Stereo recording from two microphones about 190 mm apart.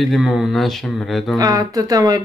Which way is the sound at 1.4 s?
20° right (ahead or behind).